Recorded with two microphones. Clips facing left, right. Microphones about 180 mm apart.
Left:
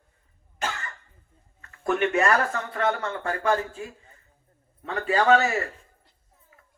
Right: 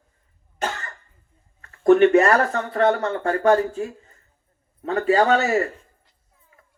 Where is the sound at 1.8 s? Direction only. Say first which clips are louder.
Right 9 dB; 35° right (ahead or behind).